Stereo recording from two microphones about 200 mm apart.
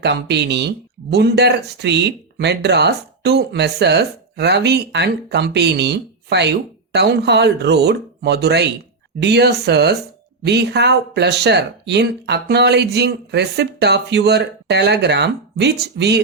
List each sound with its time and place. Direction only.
0.0 s speech: 55° right (ahead or behind)